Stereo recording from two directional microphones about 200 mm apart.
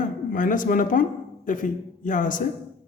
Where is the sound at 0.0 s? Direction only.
40° left (ahead or behind).